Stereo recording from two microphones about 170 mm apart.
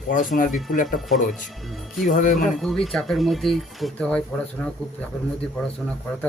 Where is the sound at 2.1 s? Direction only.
45° left (ahead or behind).